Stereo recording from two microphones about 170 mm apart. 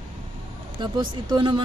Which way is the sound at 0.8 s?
25° right (ahead or behind).